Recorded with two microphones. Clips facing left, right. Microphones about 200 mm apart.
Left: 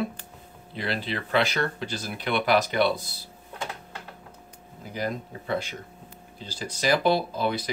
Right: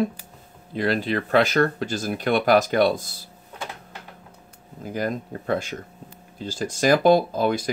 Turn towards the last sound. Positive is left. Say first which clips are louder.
# right 5 dB
turn(degrees=-45)  # may be behind; listen again after turning